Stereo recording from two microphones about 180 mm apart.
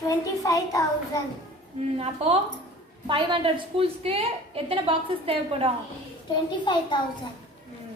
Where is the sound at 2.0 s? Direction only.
35° right (ahead or behind).